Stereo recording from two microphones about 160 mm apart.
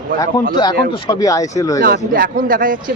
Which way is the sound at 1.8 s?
65° right (ahead or behind).